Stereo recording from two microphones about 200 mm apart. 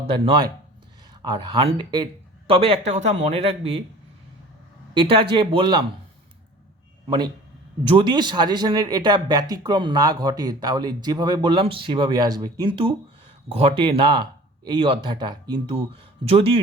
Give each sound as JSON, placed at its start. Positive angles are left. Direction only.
{"t": 0.1, "sound": "speech", "side_deg": -25}
{"t": 4.9, "sound": "speech", "side_deg": -25}
{"t": 7.9, "sound": "speech", "side_deg": -25}